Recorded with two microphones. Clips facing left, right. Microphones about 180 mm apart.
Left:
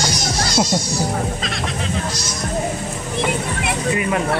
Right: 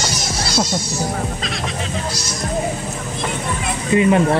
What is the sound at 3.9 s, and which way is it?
Speech, 25° right (ahead or behind).